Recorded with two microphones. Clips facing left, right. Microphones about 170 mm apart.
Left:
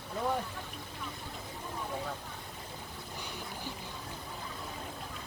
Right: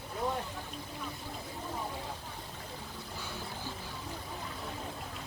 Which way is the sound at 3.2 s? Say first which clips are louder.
Even; 15° left (ahead or behind).